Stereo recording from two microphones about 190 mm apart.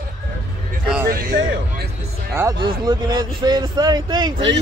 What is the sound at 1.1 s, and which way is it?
Music, 45° right (ahead or behind).